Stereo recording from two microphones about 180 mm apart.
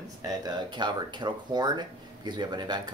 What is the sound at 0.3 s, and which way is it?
Speech, 20° right (ahead or behind).